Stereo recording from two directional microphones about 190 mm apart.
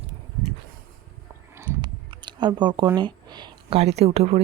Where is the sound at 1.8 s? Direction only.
25° right (ahead or behind).